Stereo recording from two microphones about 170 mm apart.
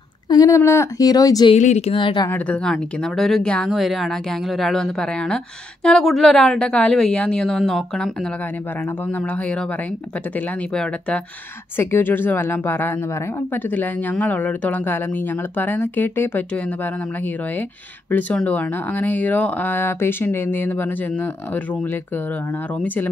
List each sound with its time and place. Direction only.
0.3 s speech: 20° left (ahead or behind)
1.5 s speech: 40° left (ahead or behind)
2.2 s speech: 10° left (ahead or behind)